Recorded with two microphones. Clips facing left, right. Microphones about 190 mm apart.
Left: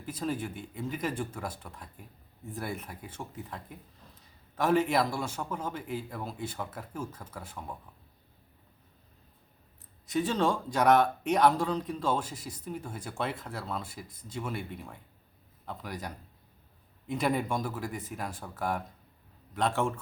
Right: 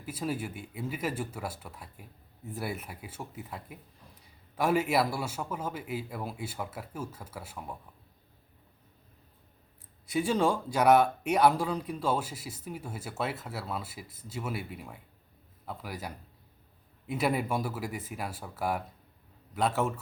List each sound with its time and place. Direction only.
0.0 s speech: 5° right (ahead or behind)
10.1 s a man's voice: 10° right (ahead or behind)